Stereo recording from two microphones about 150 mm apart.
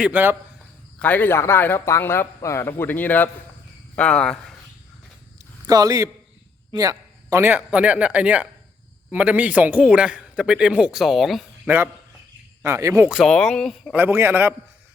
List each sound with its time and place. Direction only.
0.0 s a man's voice: 10° right (ahead or behind)
0.9 s a man's voice: 10° left (ahead or behind)
5.6 s a man's voice: 25° right (ahead or behind); by 11.7 s centre (ahead or behind)
12.6 s a man's voice: 20° right (ahead or behind)
13.1 s speech: centre (ahead or behind)
13.9 s a man's voice: 15° right (ahead or behind)